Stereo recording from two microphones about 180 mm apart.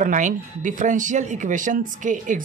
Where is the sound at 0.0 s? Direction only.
45° right (ahead or behind).